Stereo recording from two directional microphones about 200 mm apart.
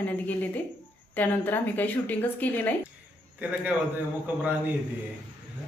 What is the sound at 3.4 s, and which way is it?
Speech, 5° right (ahead or behind).